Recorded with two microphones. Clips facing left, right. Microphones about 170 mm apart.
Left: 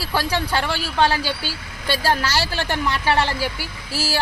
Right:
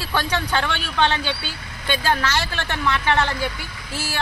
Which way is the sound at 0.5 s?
5° left (ahead or behind).